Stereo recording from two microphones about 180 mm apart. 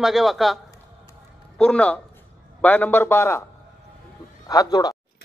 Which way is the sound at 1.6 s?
5° left (ahead or behind).